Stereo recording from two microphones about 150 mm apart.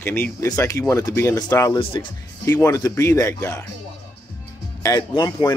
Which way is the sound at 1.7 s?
35° left (ahead or behind).